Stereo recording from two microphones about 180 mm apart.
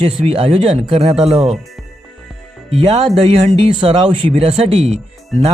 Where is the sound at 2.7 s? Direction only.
30° right (ahead or behind).